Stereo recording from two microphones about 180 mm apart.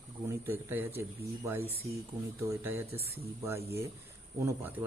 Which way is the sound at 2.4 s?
15° right (ahead or behind).